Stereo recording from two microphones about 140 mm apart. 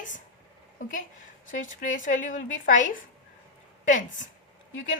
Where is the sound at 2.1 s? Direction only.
70° left (ahead or behind).